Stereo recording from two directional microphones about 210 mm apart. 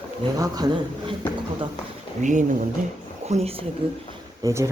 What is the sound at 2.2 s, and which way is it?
Speech, 35° right (ahead or behind).